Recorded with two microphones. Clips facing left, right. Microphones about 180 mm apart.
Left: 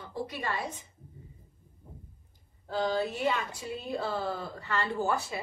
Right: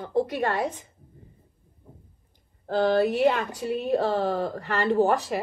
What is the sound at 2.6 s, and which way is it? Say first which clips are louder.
Speech: right 8 dB; 65° right (ahead or behind).